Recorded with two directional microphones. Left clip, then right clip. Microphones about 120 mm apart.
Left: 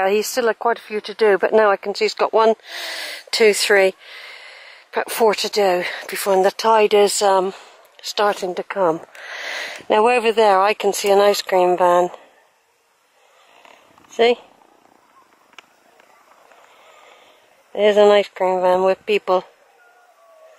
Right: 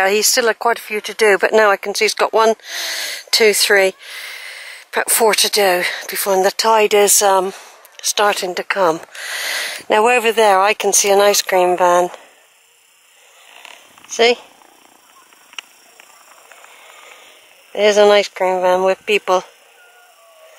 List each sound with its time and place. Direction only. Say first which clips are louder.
0.0 s speech: right 4 dB; centre (ahead or behind)
0.8 s speech: right 2 dB; 10° left (ahead or behind)
9.1 s speech: right 6 dB; 5° left (ahead or behind)
13.6 s purr: right 8 dB; 10° left (ahead or behind)
17.7 s speech: right 2 dB; 10° left (ahead or behind)